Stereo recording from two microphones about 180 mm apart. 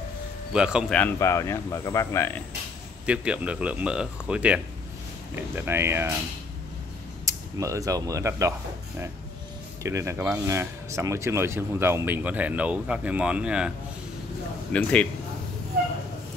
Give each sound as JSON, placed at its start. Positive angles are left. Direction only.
{"t": 0.5, "sound": "speech", "side_deg": -5}
{"t": 0.9, "sound": "speech", "side_deg": 10}
{"t": 3.1, "sound": "speech", "side_deg": -5}
{"t": 5.6, "sound": "speech", "side_deg": -15}
{"t": 7.2, "sound": "speech", "side_deg": -15}
{"t": 9.8, "sound": "speech", "side_deg": -15}
{"t": 14.7, "sound": "speech", "side_deg": 5}